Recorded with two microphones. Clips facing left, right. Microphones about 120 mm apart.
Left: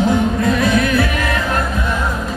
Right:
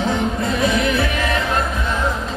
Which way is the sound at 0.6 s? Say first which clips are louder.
Left 3 dB; 20° right (ahead or behind).